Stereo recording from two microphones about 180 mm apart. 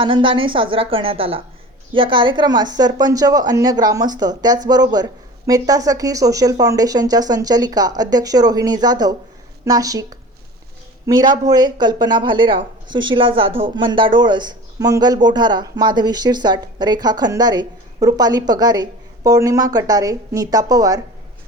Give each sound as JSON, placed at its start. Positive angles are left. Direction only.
{"t": 0.0, "sound": "speech", "side_deg": -30}